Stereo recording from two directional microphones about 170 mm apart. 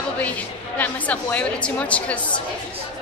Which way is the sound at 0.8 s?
10° left (ahead or behind).